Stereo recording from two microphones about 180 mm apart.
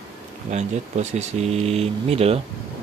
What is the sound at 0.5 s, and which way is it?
Speech, 40° right (ahead or behind).